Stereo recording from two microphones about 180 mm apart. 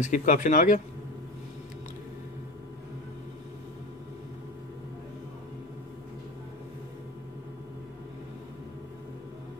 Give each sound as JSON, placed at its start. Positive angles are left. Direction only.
{"t": 0.0, "sound": "speech", "side_deg": 45}